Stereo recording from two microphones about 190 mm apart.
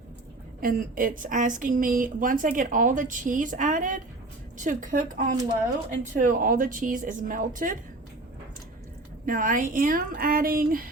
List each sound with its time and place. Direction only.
0.6 s speech: 45° right (ahead or behind)
9.2 s speech: 45° right (ahead or behind)